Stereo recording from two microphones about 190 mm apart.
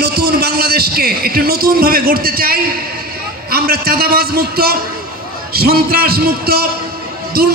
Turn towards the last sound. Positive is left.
turn(degrees=-55)  # may be behind; listen again after turning